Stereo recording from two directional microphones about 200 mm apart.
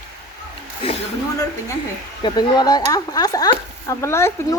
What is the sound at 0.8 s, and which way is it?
Speech, 30° left (ahead or behind).